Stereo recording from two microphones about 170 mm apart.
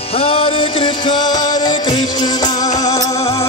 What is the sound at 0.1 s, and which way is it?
Music, 35° left (ahead or behind).